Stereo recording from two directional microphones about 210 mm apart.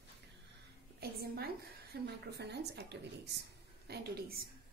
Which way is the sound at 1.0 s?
50° right (ahead or behind).